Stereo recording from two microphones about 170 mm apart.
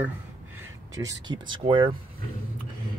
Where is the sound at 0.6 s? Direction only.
20° right (ahead or behind).